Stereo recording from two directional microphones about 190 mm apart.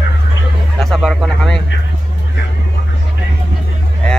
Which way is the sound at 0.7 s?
Centre (ahead or behind).